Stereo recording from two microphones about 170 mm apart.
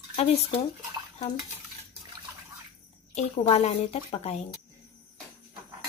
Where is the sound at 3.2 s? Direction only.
40° left (ahead or behind).